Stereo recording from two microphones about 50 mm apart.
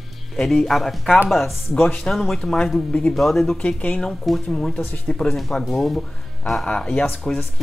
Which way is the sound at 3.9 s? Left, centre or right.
Centre.